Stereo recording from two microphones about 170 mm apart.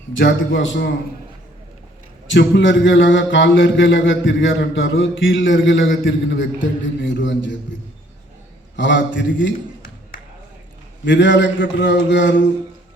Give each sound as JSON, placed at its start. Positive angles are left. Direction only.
{"t": 0.2, "sound": "a man's voice", "side_deg": 90}
{"t": 2.2, "sound": "a man's voice", "side_deg": 90}
{"t": 8.7, "sound": "a man's voice", "side_deg": 90}
{"t": 11.0, "sound": "a man's voice", "side_deg": 90}